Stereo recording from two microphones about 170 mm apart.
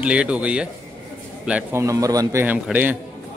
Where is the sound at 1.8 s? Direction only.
20° right (ahead or behind).